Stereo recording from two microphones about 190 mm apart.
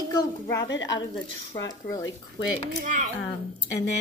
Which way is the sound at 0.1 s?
20° left (ahead or behind).